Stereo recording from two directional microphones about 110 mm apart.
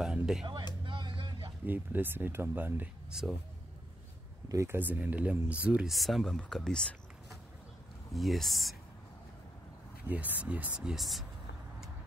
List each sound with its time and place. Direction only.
0.0 s a sound: 5° right (ahead or behind)
0.8 s vehicle: 50° right (ahead or behind)
1.7 s speech: 20° right (ahead or behind)
3.1 s speech: 5° right (ahead or behind)
4.5 s speech: 25° right (ahead or behind)
5.9 s speech: centre (ahead or behind)
10.0 s speech: 15° right (ahead or behind)